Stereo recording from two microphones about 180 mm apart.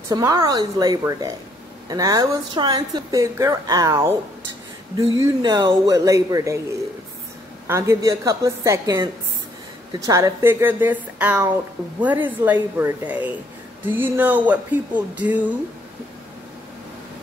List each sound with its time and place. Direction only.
0.1 s speech: 20° right (ahead or behind)
5.2 s speech: 25° right (ahead or behind)
7.6 s a woman's voice: 15° right (ahead or behind)